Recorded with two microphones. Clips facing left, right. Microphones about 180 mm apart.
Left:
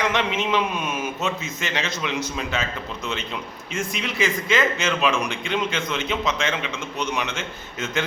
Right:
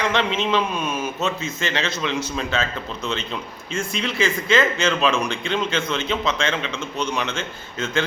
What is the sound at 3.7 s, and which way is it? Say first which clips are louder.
Speech: right 2 dB; 30° right (ahead or behind).